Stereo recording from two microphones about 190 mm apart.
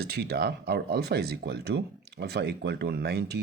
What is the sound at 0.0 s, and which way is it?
Speech, 55° right (ahead or behind).